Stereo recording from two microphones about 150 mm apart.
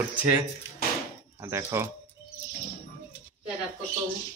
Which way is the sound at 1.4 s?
20° right (ahead or behind).